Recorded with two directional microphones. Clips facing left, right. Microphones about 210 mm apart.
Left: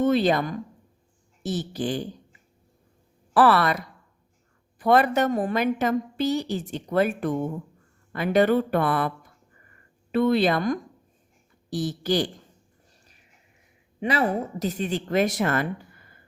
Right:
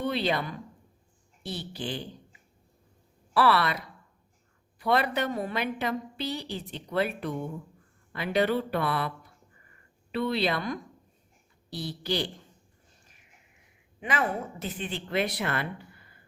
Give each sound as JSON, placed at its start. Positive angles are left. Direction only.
{"t": 0.0, "sound": "a woman's voice", "side_deg": 45}
{"t": 3.3, "sound": "a woman's voice", "side_deg": 45}
{"t": 14.0, "sound": "a woman's voice", "side_deg": 35}